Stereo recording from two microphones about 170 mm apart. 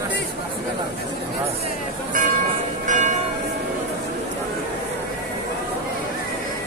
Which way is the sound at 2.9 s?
45° right (ahead or behind).